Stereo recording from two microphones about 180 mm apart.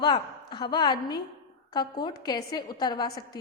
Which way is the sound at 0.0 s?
25° left (ahead or behind).